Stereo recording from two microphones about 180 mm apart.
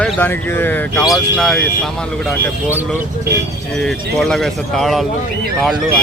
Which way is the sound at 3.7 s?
5° left (ahead or behind).